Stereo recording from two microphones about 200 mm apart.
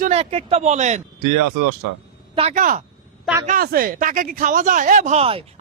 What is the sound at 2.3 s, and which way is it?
Speech, 35° right (ahead or behind).